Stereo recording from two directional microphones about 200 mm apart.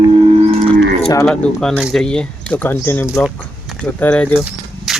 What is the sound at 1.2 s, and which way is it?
Speech, 5° left (ahead or behind).